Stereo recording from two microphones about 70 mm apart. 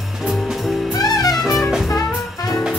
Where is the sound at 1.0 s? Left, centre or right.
Left.